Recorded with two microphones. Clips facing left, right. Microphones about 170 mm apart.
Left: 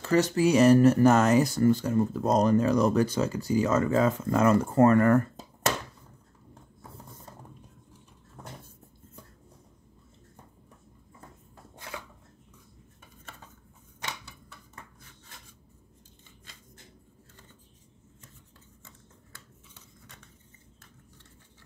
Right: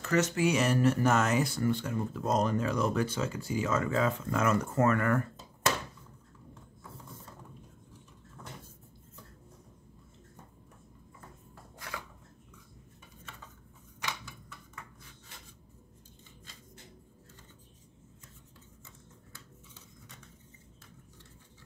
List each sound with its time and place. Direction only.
0.0 s speech: 30° left (ahead or behind)